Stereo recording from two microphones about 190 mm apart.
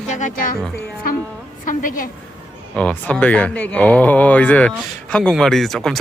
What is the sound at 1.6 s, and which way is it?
Speech, 45° left (ahead or behind).